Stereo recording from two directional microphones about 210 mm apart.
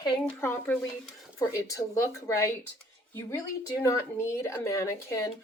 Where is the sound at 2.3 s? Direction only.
15° left (ahead or behind).